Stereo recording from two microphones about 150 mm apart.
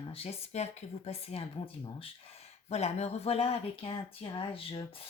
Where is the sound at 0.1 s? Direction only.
40° left (ahead or behind).